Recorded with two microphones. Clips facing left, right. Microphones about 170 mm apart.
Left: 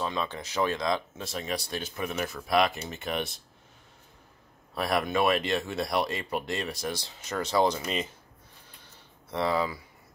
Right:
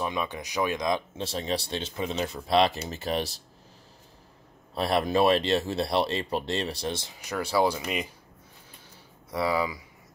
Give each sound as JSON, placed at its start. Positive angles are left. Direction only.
{"t": 0.0, "sound": "speech", "side_deg": -15}
{"t": 1.2, "sound": "speech", "side_deg": -30}
{"t": 4.7, "sound": "speech", "side_deg": -30}
{"t": 9.3, "sound": "speech", "side_deg": -5}